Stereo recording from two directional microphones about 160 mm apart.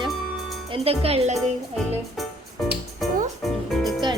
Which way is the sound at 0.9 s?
40° right (ahead or behind).